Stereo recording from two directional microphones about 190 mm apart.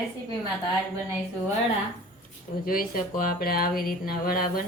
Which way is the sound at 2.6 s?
50° left (ahead or behind).